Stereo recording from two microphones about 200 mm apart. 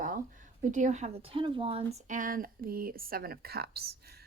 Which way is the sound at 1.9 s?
40° right (ahead or behind).